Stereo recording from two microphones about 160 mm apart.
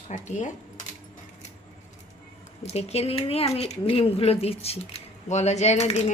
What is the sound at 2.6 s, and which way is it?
Speech, 40° left (ahead or behind).